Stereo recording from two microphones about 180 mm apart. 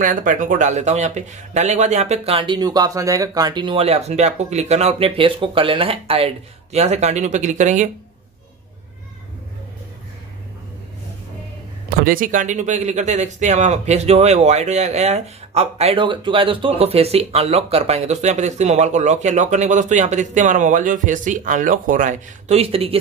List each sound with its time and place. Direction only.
0.0 s speech: 45° right (ahead or behind)
11.9 s speech: 55° right (ahead or behind); by 22.9 s 30° right (ahead or behind)